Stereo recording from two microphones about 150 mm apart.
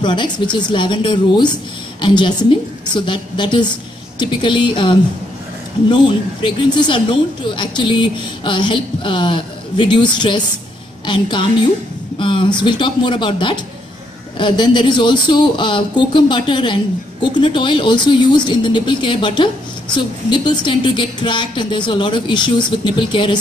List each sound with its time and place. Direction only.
0.0 s speech: 30° left (ahead or behind)